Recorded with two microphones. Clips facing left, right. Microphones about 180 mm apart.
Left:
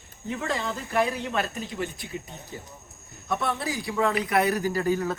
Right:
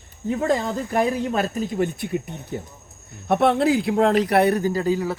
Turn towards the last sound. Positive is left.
turn(degrees=-15)  # may be behind; listen again after turning